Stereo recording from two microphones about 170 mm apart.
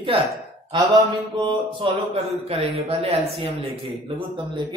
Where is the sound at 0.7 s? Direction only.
30° right (ahead or behind).